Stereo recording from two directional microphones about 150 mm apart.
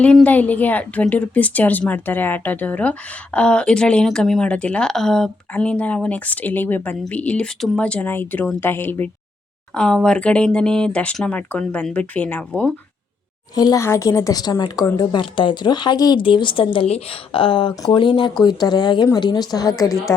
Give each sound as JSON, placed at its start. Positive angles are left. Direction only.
{"t": 0.0, "sound": "speech", "side_deg": 10}
{"t": 13.6, "sound": "a woman's voice", "side_deg": 25}